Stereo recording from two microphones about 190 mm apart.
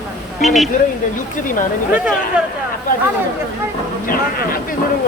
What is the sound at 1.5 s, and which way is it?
Speech, 45° left (ahead or behind).